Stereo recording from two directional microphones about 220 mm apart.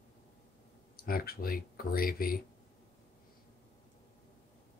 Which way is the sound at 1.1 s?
40° left (ahead or behind).